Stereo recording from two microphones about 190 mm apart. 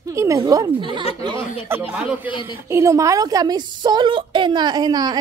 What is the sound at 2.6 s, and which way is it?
A woman's voice, 15° right (ahead or behind).